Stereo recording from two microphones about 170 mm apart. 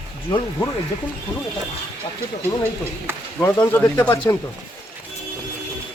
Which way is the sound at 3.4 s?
15° left (ahead or behind).